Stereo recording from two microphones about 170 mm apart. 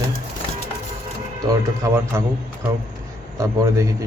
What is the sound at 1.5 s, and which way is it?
Speech, 15° right (ahead or behind).